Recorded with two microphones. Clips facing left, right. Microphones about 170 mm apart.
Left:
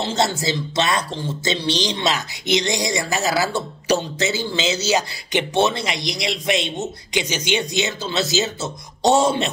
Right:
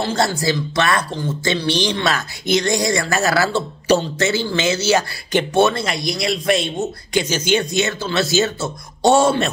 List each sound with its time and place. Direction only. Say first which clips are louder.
0.0 s speech: right 2 dB; 25° left (ahead or behind)